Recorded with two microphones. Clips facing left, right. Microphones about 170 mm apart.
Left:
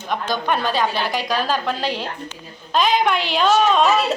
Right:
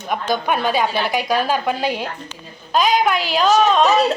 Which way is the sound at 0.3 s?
10° right (ahead or behind).